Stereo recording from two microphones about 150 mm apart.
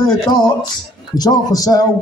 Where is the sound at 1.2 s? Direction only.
25° left (ahead or behind).